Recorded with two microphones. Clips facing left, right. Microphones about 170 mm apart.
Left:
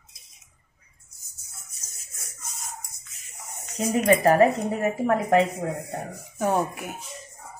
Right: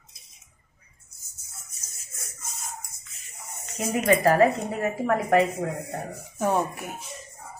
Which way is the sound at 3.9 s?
35° left (ahead or behind).